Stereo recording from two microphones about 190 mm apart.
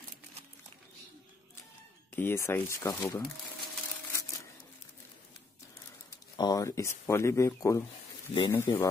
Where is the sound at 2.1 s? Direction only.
10° left (ahead or behind).